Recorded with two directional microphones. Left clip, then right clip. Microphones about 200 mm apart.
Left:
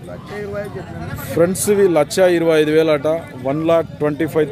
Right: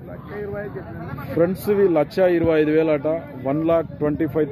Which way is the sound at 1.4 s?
15° left (ahead or behind).